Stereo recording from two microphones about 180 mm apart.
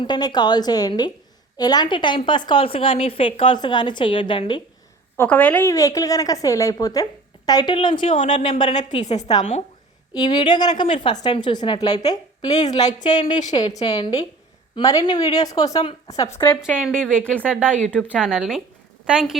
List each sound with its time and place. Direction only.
0.0 s a woman's voice: 25° left (ahead or behind)
5.1 s a woman's voice: 10° left (ahead or behind); by 8.1 s 25° left (ahead or behind)
8.1 s speech: 45° left (ahead or behind)
8.5 s a woman's voice: 25° left (ahead or behind)
8.8 s a woman's voice: 40° left (ahead or behind)
10.2 s a woman's voice: 25° left (ahead or behind)
16.6 s speech: 5° right (ahead or behind)